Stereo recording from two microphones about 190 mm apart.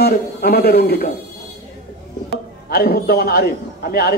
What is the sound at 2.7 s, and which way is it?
Speech, 55° left (ahead or behind).